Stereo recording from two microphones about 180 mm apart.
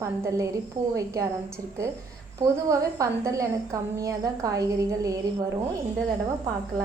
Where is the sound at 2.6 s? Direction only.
20° right (ahead or behind).